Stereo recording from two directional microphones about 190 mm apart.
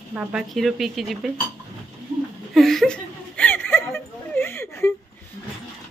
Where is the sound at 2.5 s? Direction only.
Centre (ahead or behind).